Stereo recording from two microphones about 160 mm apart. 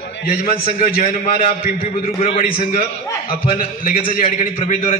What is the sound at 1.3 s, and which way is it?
A man's voice, 55° left (ahead or behind).